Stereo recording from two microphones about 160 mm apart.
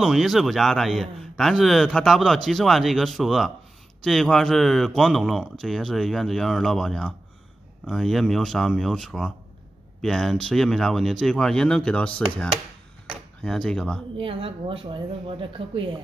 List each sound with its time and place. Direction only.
0.0 s speech: centre (ahead or behind)
14.1 s a woman's voice: 35° right (ahead or behind)